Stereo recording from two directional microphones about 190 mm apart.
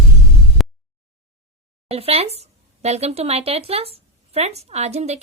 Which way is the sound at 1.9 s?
30° right (ahead or behind).